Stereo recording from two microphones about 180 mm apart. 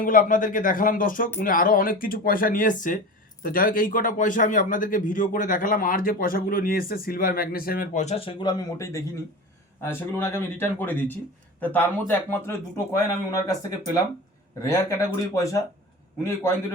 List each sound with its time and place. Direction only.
0.0 s a man's voice: 50° left (ahead or behind)
8.0 s a man's voice: 30° left (ahead or behind); by 15.5 s 15° left (ahead or behind)